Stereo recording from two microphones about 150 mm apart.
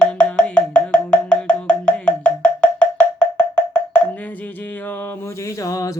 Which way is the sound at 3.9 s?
10° left (ahead or behind).